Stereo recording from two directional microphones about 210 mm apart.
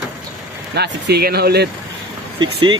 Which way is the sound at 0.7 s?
50° right (ahead or behind).